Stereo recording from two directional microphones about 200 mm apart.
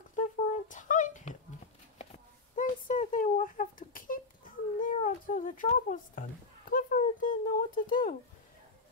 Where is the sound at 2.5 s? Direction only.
35° left (ahead or behind).